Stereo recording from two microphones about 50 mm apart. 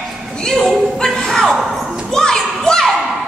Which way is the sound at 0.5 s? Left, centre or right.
Centre.